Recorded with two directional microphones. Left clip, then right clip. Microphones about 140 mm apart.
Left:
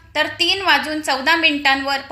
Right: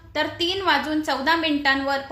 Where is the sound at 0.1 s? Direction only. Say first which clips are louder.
Left 6 dB; 20° left (ahead or behind).